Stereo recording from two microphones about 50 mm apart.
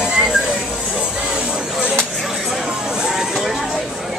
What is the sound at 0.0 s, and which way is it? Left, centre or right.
Music, centre.